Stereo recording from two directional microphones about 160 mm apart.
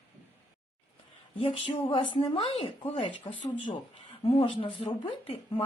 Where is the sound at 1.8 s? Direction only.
30° left (ahead or behind).